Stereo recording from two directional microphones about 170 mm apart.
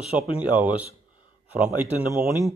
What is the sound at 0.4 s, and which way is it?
Speech, 10° right (ahead or behind).